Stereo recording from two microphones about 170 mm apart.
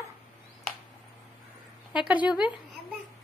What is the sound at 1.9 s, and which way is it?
Speech, 5° right (ahead or behind).